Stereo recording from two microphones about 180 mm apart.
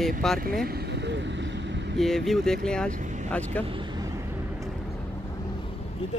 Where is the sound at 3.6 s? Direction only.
25° right (ahead or behind).